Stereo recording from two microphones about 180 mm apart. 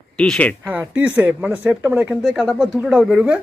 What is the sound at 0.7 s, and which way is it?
Speech, 10° right (ahead or behind).